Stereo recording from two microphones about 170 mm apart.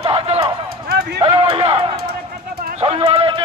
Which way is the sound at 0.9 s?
65° right (ahead or behind).